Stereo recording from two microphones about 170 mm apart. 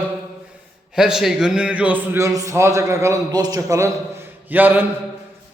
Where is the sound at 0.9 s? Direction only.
5° right (ahead or behind).